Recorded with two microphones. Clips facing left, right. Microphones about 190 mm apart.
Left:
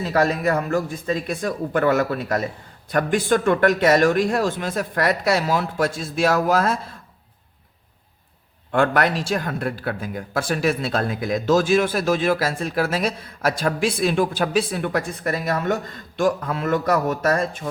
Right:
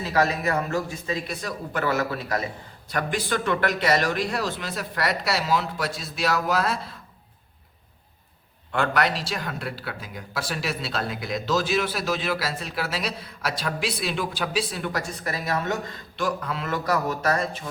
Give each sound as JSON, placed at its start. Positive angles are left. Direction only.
{"t": 0.4, "sound": "speech", "side_deg": 50}
{"t": 8.7, "sound": "speech", "side_deg": 50}